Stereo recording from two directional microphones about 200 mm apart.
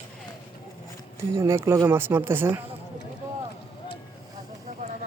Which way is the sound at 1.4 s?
15° right (ahead or behind).